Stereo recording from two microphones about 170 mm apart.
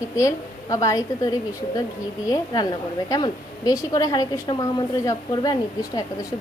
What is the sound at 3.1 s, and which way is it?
A woman's voice, 20° left (ahead or behind).